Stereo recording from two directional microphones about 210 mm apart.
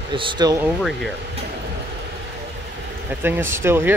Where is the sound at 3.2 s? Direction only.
10° right (ahead or behind).